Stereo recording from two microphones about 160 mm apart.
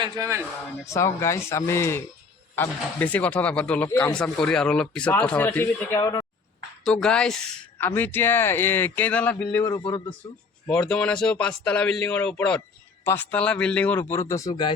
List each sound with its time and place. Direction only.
0.0 s speech: 20° right (ahead or behind)
0.9 s speech: 20° left (ahead or behind)
6.0 s speech: 25° left (ahead or behind)
6.8 s speech: 5° left (ahead or behind)
9.8 s speech: 30° left (ahead or behind)
10.7 s speech: 5° left (ahead or behind); by 14.7 s 25° left (ahead or behind)